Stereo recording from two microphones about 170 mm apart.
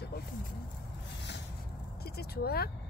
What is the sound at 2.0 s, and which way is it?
Speech, 65° left (ahead or behind).